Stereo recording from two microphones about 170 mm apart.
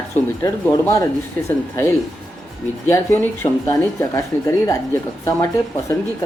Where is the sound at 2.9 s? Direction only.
15° left (ahead or behind).